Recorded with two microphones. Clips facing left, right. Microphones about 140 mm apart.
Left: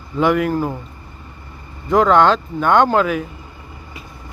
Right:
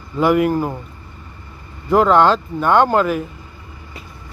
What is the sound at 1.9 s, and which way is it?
Speech, 5° right (ahead or behind).